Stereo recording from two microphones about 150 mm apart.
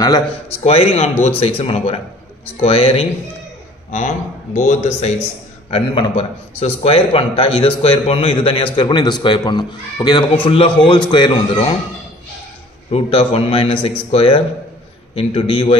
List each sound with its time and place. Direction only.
0.0 s a man's voice: 25° left (ahead or behind)
0.7 s a man's voice: 40° left (ahead or behind)
4.6 s a man's voice: 55° left (ahead or behind)
5.7 s a man's voice: 35° left (ahead or behind)
12.9 s a man's voice: 40° left (ahead or behind)